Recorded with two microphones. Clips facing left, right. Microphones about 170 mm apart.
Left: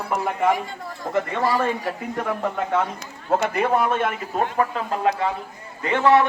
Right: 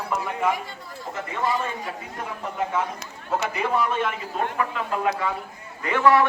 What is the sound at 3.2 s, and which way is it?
Speech, 55° left (ahead or behind).